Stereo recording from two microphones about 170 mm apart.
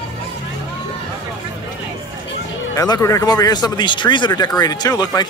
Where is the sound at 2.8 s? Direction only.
20° left (ahead or behind).